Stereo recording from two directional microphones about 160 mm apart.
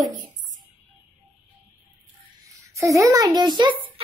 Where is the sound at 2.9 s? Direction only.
20° right (ahead or behind).